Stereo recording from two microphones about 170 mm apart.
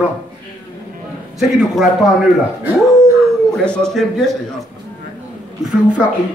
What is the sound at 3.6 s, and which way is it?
Speech, 5° left (ahead or behind).